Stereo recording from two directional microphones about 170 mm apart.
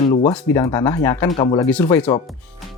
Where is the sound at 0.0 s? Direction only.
30° left (ahead or behind).